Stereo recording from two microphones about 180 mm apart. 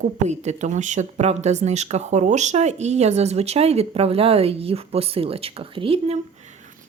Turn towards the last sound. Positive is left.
turn(degrees=-35)  # may be behind; listen again after turning